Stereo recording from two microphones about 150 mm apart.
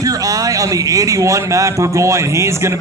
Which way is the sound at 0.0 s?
25° right (ahead or behind).